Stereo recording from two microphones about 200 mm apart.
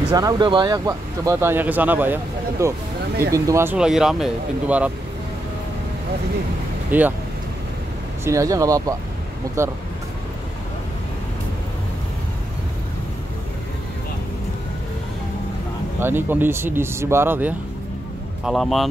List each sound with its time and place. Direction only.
0.1 s speech: 20° right (ahead or behind)
6.9 s speech: 10° right (ahead or behind)
8.3 s speech: 15° right (ahead or behind)
16.0 s speech: 10° right (ahead or behind)